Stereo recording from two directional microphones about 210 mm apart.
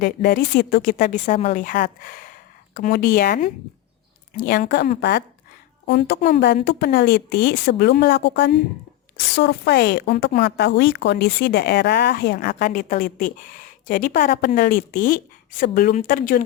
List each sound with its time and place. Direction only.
0.0 s a woman's voice: 45° left (ahead or behind)